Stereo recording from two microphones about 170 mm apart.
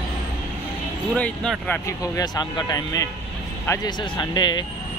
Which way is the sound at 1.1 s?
5° left (ahead or behind).